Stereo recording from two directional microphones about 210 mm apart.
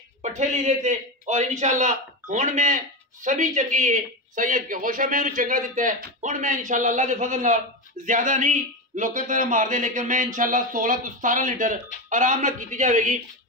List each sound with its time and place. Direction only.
0.2 s a man's voice: 35° right (ahead or behind)